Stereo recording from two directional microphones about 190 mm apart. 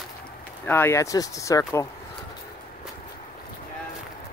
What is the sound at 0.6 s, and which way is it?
Speech, 10° left (ahead or behind).